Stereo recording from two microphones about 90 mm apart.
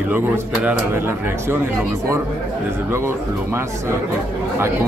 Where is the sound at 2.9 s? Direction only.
25° right (ahead or behind).